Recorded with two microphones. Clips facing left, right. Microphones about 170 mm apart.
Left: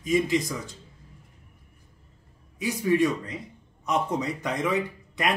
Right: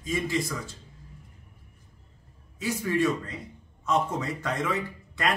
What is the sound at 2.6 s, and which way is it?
Speech, 15° left (ahead or behind).